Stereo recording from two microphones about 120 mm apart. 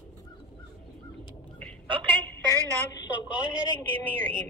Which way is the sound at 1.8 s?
45° right (ahead or behind).